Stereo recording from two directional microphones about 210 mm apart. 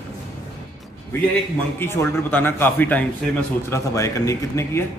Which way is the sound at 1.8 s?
10° left (ahead or behind).